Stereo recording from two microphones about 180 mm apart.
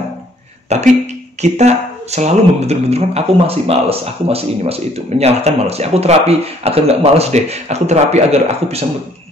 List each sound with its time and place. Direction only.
0.7 s speech: 40° right (ahead or behind)